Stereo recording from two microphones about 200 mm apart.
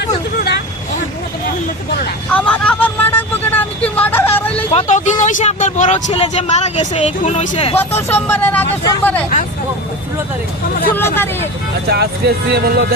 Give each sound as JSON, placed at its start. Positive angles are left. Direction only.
{"t": 2.3, "sound": "vehicle", "side_deg": 5}
{"t": 4.7, "sound": "speech", "side_deg": 35}
{"t": 7.8, "sound": "speech", "side_deg": 10}
{"t": 10.9, "sound": "speech", "side_deg": 10}
{"t": 11.9, "sound": "speech", "side_deg": -55}